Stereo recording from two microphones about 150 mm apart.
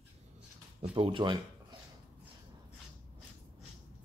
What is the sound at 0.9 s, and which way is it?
Speech, 35° right (ahead or behind).